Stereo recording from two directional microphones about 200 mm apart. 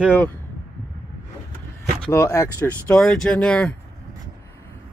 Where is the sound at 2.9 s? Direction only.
5° left (ahead or behind).